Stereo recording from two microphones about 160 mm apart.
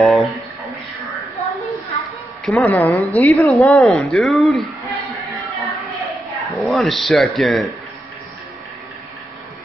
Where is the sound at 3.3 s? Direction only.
5° left (ahead or behind).